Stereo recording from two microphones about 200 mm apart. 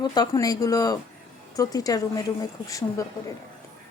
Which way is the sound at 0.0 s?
20° left (ahead or behind).